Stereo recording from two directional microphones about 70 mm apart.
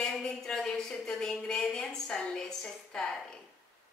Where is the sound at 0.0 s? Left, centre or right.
Centre.